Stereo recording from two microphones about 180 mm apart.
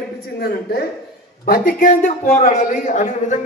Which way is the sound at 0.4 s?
60° left (ahead or behind).